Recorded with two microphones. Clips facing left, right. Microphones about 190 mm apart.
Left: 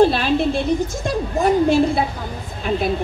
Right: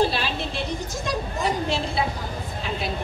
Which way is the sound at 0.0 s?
55° left (ahead or behind).